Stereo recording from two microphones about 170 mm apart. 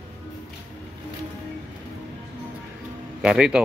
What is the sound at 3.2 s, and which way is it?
Speech, 5° right (ahead or behind).